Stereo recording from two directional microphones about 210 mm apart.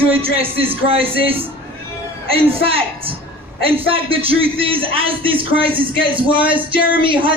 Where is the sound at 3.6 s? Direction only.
25° right (ahead or behind).